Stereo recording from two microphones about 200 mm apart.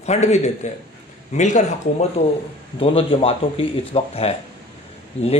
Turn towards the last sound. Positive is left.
turn(degrees=35)  # may be behind; listen again after turning